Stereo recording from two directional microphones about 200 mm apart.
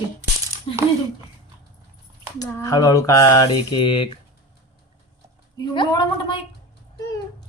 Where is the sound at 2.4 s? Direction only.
20° left (ahead or behind).